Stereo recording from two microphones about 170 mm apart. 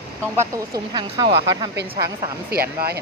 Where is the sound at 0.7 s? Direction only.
25° right (ahead or behind).